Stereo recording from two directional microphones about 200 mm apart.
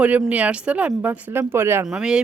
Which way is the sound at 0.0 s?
5° right (ahead or behind).